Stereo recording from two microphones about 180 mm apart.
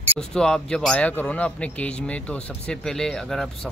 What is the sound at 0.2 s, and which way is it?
A man's voice, 5° left (ahead or behind).